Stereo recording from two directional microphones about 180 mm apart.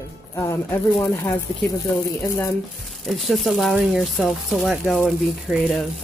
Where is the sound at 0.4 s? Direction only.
15° left (ahead or behind).